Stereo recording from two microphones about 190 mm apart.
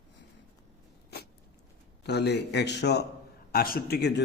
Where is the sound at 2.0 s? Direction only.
60° left (ahead or behind).